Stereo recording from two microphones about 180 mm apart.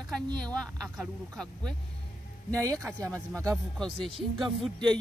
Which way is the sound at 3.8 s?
30° right (ahead or behind).